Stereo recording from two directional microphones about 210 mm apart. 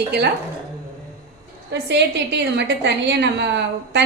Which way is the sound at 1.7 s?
55° right (ahead or behind).